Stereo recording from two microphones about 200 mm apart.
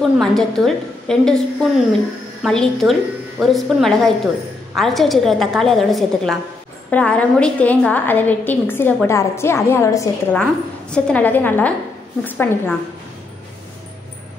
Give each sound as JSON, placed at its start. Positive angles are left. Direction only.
{"t": 0.2, "sound": "a woman's voice", "side_deg": 0}